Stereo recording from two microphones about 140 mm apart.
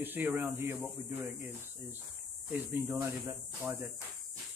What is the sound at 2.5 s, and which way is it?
Speech, 10° right (ahead or behind).